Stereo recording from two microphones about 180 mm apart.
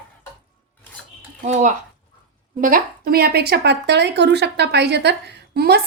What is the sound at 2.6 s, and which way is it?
A woman's voice, 50° right (ahead or behind).